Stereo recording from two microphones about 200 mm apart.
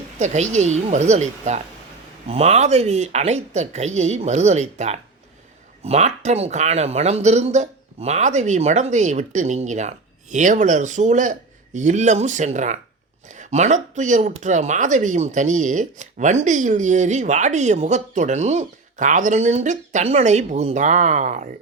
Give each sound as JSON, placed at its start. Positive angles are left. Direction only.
{"t": 0.2, "sound": "speech", "side_deg": -35}